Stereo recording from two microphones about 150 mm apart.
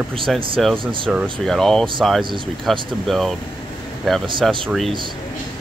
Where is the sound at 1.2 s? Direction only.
5° left (ahead or behind).